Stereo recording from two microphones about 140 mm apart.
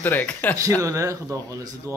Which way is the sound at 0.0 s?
15° left (ahead or behind).